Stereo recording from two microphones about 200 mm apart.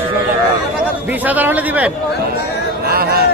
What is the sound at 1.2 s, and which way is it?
Speech, 10° right (ahead or behind).